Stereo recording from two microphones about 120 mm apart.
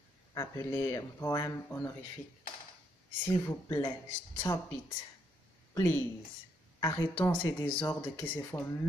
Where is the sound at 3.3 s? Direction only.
25° left (ahead or behind).